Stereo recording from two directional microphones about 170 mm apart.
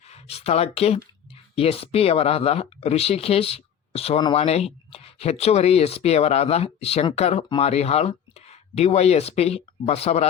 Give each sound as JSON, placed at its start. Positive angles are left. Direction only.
{"t": 0.1, "sound": "speech", "side_deg": 35}